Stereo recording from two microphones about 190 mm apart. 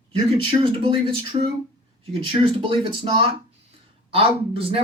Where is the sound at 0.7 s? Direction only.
30° right (ahead or behind).